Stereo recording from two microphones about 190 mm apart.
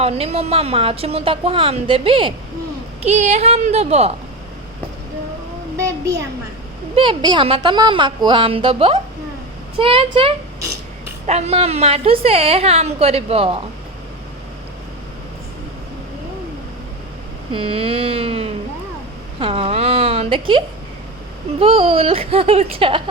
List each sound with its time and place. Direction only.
0.0 s a woman's voice: 30° right (ahead or behind)
6.9 s a woman's voice: 25° right (ahead or behind)
17.5 s cat: 30° right (ahead or behind)
19.4 s a woman's voice: 30° right (ahead or behind)